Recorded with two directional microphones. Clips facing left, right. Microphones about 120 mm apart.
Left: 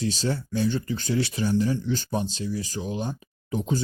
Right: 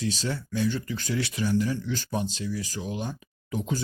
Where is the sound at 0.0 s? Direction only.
30° left (ahead or behind).